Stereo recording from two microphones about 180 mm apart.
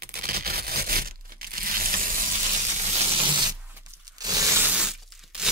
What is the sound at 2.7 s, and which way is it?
Sanding, 35° right (ahead or behind).